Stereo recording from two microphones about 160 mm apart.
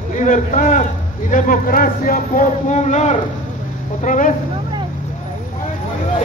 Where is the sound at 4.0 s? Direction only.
55° left (ahead or behind).